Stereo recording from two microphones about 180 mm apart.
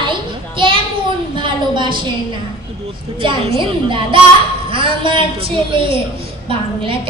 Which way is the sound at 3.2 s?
30° right (ahead or behind).